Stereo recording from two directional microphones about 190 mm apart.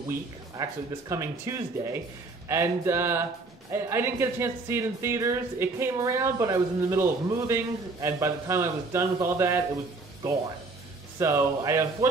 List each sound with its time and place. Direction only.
0.6 s speech: 15° right (ahead or behind)
11.1 s speech: 15° right (ahead or behind)